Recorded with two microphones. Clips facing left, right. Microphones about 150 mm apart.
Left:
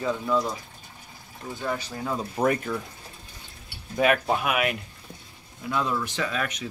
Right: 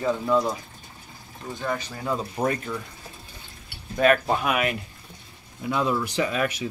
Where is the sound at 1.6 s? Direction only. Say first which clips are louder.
Right 1 dB; 5° left (ahead or behind).